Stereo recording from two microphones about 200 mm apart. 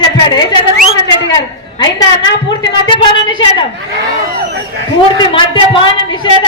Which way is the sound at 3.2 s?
25° left (ahead or behind).